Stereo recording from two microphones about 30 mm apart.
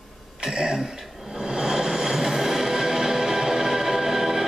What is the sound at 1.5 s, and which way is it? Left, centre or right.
Music, centre.